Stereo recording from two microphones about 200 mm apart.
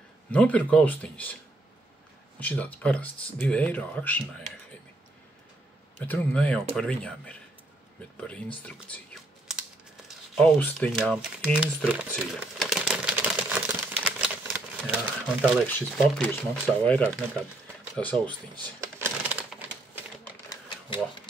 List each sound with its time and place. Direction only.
0.3 s speech: 5° left (ahead or behind)
2.4 s speech: 5° left (ahead or behind)
5.9 s speech: 5° left (ahead or behind)
12.2 s typewriter: centre (ahead or behind)
17.9 s speech: 5° left (ahead or behind)
18.8 s typewriter: 10° right (ahead or behind)
20.4 s typewriter: 25° left (ahead or behind)